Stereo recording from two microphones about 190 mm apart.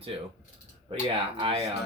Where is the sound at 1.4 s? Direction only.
30° right (ahead or behind).